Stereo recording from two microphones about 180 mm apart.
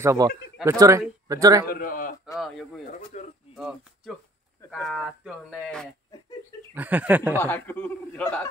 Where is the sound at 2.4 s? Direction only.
Centre (ahead or behind).